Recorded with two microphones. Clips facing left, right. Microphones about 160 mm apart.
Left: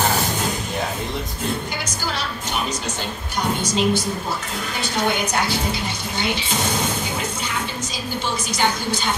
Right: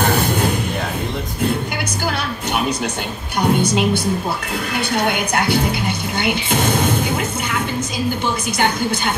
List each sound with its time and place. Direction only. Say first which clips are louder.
0.0 s music: right 4 dB; 60° right (ahead or behind)
2.0 s music: right 4 dB; 60° right (ahead or behind)
3.3 s a woman's voice: right 5 dB; 60° right (ahead or behind)
8.5 s a woman's voice: right 2 dB; 55° right (ahead or behind)